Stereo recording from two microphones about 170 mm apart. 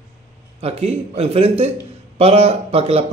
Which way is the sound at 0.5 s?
35° right (ahead or behind).